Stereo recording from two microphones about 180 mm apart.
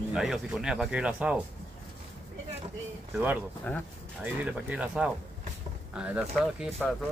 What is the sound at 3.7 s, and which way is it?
Speech, 5° left (ahead or behind).